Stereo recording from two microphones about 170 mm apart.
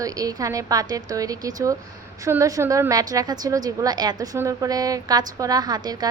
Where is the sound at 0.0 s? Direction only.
20° right (ahead or behind).